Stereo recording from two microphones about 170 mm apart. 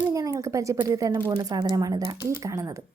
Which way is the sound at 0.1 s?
20° right (ahead or behind).